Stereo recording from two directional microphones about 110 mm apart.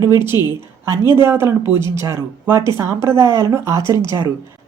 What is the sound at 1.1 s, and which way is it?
A woman's voice, 20° right (ahead or behind).